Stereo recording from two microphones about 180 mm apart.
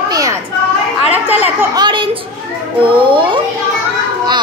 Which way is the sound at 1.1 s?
10° right (ahead or behind).